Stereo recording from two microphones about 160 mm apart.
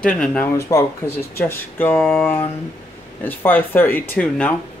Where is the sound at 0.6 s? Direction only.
20° left (ahead or behind).